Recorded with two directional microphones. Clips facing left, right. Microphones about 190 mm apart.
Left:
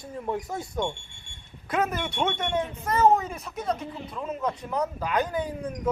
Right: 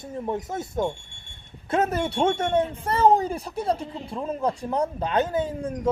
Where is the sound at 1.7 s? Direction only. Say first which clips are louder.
Right 4 dB; 30° right (ahead or behind).